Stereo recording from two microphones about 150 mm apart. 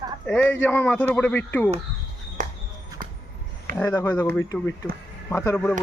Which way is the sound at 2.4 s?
55° right (ahead or behind).